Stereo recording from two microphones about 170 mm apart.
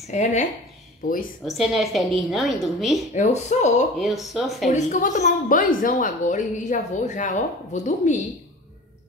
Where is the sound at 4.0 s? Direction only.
Centre (ahead or behind).